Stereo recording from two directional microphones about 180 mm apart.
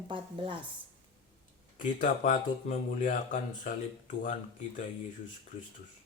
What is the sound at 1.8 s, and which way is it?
Speech, 50° left (ahead or behind).